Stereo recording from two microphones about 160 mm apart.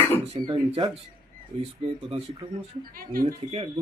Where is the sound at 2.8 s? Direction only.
65° right (ahead or behind).